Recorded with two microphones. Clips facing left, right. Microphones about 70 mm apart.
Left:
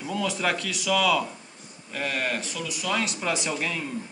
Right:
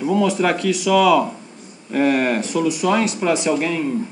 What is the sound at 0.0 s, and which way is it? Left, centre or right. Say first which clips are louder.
Speech: right 11 dB; right.